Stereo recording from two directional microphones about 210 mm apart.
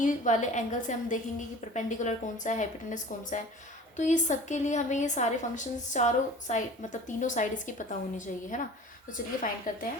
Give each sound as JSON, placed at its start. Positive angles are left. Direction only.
{"t": 0.0, "sound": "a woman's voice", "side_deg": 35}